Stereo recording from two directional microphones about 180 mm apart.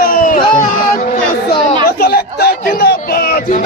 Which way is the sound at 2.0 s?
60° left (ahead or behind).